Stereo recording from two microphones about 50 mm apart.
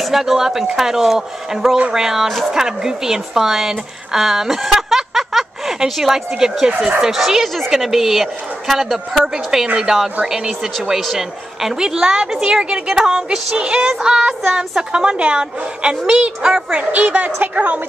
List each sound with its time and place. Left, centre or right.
0.0 s music: centre
1.9 s a woman's voice: centre
9.3 s music: centre
16.1 s speech: centre